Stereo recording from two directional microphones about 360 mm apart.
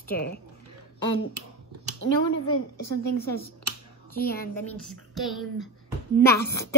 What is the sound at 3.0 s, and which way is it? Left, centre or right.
Speech, left.